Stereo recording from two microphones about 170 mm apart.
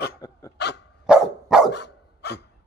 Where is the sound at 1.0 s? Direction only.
5° right (ahead or behind).